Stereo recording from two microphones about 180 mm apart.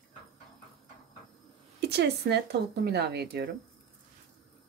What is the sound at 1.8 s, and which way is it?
Speech, 65° right (ahead or behind).